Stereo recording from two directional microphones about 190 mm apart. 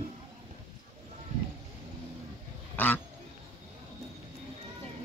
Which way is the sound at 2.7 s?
10° left (ahead or behind).